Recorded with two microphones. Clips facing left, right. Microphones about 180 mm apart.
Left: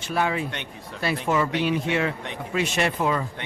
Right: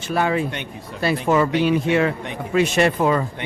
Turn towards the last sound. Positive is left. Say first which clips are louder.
# right 6 dB
turn(degrees=-50)  # may be behind; listen again after turning